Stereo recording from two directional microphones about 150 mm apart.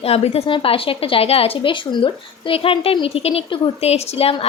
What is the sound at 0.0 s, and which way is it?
A woman's voice, 40° left (ahead or behind).